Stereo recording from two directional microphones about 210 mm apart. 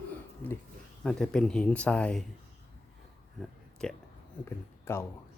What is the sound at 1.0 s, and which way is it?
Speech, 5° left (ahead or behind).